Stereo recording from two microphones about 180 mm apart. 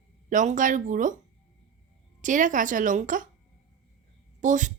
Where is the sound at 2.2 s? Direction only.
45° right (ahead or behind).